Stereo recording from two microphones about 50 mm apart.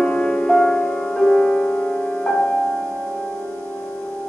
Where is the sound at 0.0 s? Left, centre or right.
Centre.